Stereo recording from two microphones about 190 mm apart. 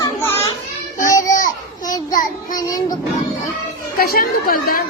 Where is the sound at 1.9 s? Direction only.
20° left (ahead or behind).